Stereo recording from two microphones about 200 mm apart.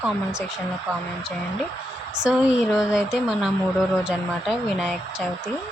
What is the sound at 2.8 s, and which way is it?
Speech, 5° right (ahead or behind).